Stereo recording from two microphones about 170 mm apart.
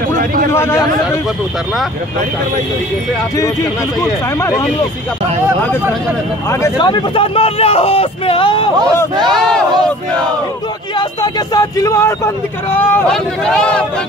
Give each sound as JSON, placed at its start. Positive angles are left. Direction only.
{"t": 0.1, "sound": "a sound", "side_deg": -55}
{"t": 0.5, "sound": "speech", "side_deg": 15}
{"t": 4.0, "sound": "speech", "side_deg": 15}
{"t": 6.8, "sound": "speech", "side_deg": 30}
{"t": 9.3, "sound": "crowd", "side_deg": 5}
{"t": 11.0, "sound": "speech", "side_deg": 25}